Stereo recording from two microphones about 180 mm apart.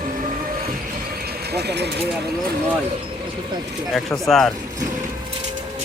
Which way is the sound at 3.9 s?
Centre (ahead or behind).